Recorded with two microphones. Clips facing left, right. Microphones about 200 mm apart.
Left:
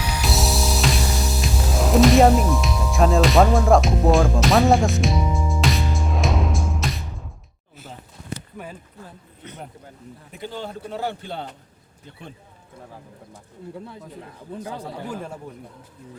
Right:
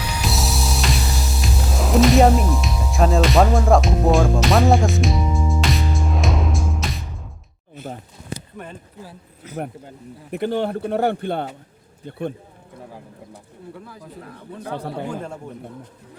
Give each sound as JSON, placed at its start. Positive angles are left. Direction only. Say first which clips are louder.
{"t": 0.3, "sound": "music", "louder": "left 2 dB", "side_deg": 0}
{"t": 9.0, "sound": "a man's voice", "louder": "right 2 dB", "side_deg": -5}
{"t": 10.3, "sound": "a man's voice", "louder": "right 11 dB", "side_deg": -65}
{"t": 14.7, "sound": "a man's voice", "louder": "right 7 dB", "side_deg": -60}
{"t": 15.1, "sound": "speech", "louder": "right 2 dB", "side_deg": 5}